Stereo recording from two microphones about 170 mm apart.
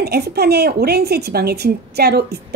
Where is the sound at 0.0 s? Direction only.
65° right (ahead or behind).